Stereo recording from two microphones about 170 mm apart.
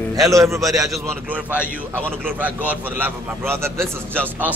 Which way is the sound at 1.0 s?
10° right (ahead or behind).